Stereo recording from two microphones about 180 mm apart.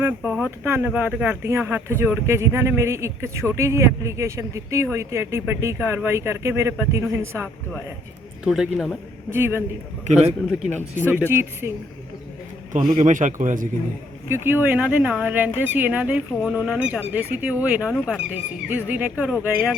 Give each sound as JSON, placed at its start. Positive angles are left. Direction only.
{"t": 0.0, "sound": "a man's voice", "side_deg": -10}
{"t": 9.3, "sound": "a man's voice", "side_deg": -15}
{"t": 10.1, "sound": "a man's voice", "side_deg": -40}
{"t": 11.3, "sound": "a man's voice", "side_deg": -15}
{"t": 12.7, "sound": "a man's voice", "side_deg": -45}
{"t": 14.3, "sound": "a man's voice", "side_deg": -15}